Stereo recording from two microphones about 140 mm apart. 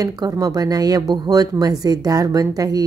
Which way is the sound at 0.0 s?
25° right (ahead or behind).